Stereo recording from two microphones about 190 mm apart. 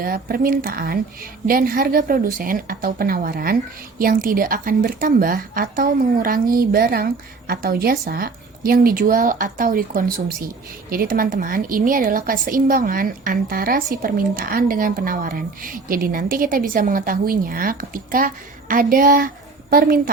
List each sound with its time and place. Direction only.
0.0 s a woman's voice: 50° right (ahead or behind)